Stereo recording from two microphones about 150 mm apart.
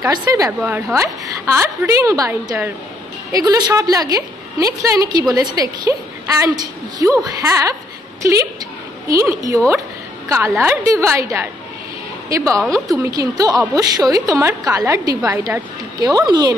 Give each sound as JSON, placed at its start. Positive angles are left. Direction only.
{"t": 0.0, "sound": "a woman's voice", "side_deg": -20}
{"t": 12.5, "sound": "a woman's voice", "side_deg": 5}
{"t": 12.8, "sound": "a woman's voice", "side_deg": -25}